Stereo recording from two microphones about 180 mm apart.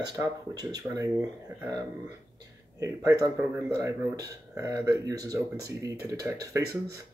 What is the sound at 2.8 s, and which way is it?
Speech, 20° right (ahead or behind).